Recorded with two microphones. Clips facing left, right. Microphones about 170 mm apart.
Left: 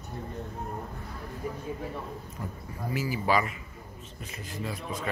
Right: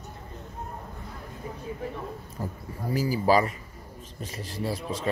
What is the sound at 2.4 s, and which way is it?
A man's voice, 30° right (ahead or behind).